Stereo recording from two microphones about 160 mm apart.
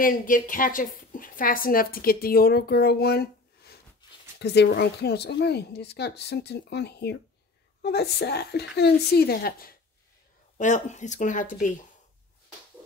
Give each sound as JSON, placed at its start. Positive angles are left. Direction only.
{"t": 0.0, "sound": "a woman's voice", "side_deg": 60}
{"t": 10.6, "sound": "speech", "side_deg": 50}